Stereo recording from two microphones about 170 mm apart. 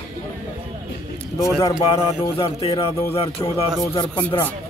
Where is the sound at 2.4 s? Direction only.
35° left (ahead or behind).